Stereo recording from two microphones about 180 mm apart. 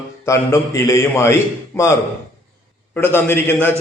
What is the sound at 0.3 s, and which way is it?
A man's voice, 15° left (ahead or behind).